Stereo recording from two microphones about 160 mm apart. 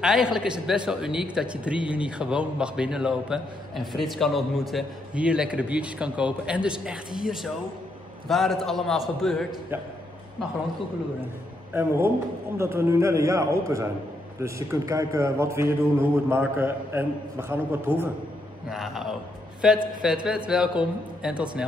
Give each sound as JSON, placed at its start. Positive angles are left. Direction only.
{"t": 0.0, "sound": "speech", "side_deg": -5}
{"t": 12.5, "sound": "a man's voice", "side_deg": -15}
{"t": 18.7, "sound": "speech", "side_deg": 0}